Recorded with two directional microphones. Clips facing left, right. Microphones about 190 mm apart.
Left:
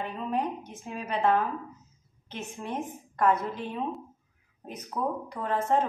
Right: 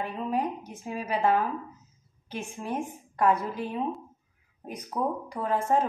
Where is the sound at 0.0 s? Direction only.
10° right (ahead or behind).